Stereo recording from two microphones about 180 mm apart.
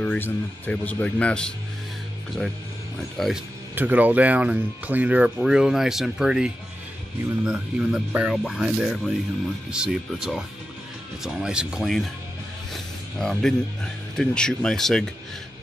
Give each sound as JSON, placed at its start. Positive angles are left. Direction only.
{"t": 0.0, "sound": "speech", "side_deg": 10}
{"t": 3.0, "sound": "speech", "side_deg": 0}
{"t": 12.7, "sound": "a sound", "side_deg": 5}
{"t": 14.1, "sound": "speech", "side_deg": 5}